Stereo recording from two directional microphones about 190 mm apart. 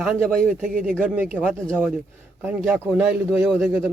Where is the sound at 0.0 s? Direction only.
Centre (ahead or behind).